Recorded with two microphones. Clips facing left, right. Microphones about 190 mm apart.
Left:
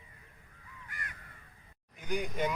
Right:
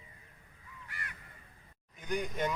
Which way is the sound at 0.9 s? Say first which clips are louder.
Even; 45° left (ahead or behind).